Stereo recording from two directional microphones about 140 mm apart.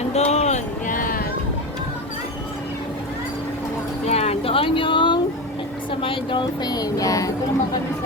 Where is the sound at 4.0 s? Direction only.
45° left (ahead or behind).